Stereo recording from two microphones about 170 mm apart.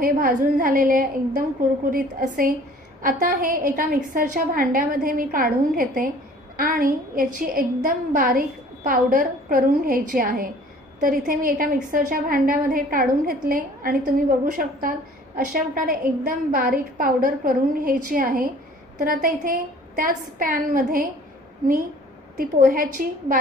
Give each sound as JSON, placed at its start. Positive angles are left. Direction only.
{"t": 0.0, "sound": "a woman's voice", "side_deg": -55}
{"t": 22.4, "sound": "a woman's voice", "side_deg": -55}